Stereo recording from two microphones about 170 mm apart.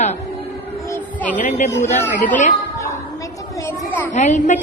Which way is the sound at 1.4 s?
45° left (ahead or behind).